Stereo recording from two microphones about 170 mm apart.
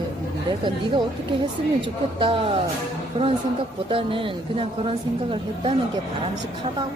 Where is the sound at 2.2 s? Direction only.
30° right (ahead or behind).